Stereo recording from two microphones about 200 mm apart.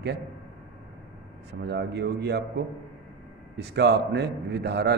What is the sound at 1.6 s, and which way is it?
A man's voice, 55° right (ahead or behind).